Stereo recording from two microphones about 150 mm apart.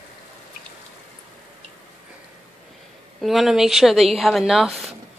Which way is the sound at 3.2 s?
Centre (ahead or behind).